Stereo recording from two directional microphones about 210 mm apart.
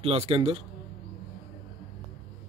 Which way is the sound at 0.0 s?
30° right (ahead or behind).